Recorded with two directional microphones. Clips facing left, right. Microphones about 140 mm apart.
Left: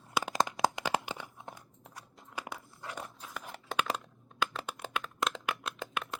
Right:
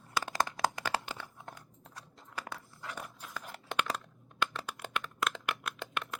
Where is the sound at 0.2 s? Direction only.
15° left (ahead or behind).